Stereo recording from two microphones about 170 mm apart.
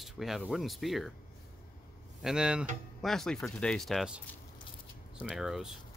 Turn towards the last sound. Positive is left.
turn(degrees=-5)  # may be behind; listen again after turning